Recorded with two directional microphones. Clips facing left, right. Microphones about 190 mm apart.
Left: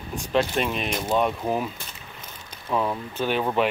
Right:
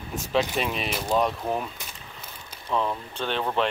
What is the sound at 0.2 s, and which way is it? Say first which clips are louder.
Speech: left 2 dB; centre (ahead or behind).